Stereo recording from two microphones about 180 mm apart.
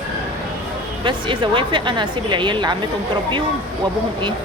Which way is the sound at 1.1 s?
25° right (ahead or behind).